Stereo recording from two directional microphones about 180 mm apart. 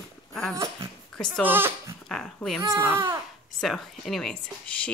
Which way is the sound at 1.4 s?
10° right (ahead or behind).